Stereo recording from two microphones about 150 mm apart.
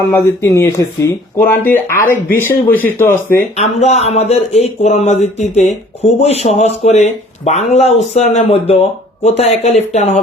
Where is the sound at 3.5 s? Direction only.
45° left (ahead or behind).